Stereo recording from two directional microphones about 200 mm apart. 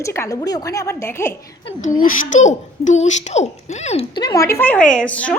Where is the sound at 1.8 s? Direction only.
40° left (ahead or behind); by 5.4 s 5° left (ahead or behind).